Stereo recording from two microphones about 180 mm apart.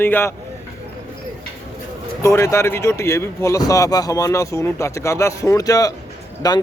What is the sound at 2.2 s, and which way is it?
Speech, 15° left (ahead or behind).